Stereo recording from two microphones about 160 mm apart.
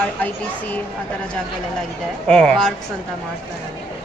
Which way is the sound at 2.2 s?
5° left (ahead or behind).